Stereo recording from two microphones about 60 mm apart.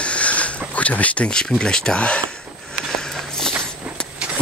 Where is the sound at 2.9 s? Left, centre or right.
Centre.